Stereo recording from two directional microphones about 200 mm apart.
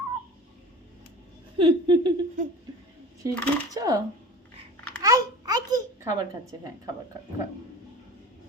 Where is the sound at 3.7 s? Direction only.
20° right (ahead or behind).